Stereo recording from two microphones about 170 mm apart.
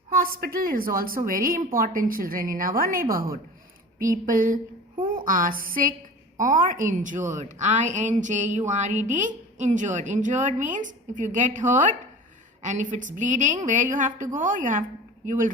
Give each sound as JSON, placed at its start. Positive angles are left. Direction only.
{"t": 0.1, "sound": "a woman's voice", "side_deg": -60}
{"t": 4.3, "sound": "a woman's voice", "side_deg": -50}